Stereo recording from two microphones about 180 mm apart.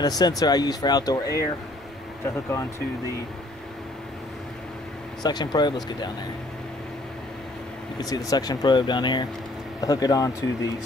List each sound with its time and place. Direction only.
0.0 s speech: 20° left (ahead or behind)
5.2 s speech: 25° left (ahead or behind)
8.0 s speech: 20° left (ahead or behind)